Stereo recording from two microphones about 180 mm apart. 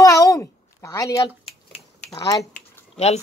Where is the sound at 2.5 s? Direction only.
35° left (ahead or behind).